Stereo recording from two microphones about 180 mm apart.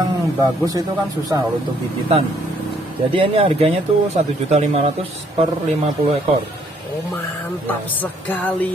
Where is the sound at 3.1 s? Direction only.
30° right (ahead or behind).